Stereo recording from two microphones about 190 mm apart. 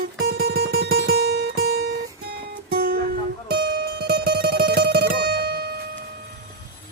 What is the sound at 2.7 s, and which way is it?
Music, 50° right (ahead or behind).